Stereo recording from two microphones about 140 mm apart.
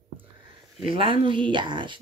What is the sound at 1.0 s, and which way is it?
Speech, 40° right (ahead or behind).